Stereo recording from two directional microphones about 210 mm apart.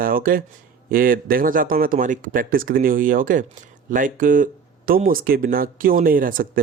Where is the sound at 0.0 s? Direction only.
40° right (ahead or behind).